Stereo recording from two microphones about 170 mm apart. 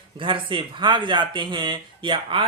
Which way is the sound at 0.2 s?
30° right (ahead or behind).